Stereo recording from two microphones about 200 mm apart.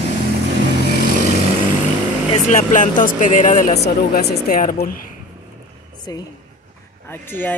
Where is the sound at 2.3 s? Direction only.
40° left (ahead or behind).